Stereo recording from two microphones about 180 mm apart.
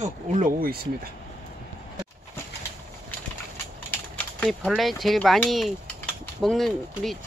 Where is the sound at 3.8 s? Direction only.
5° left (ahead or behind).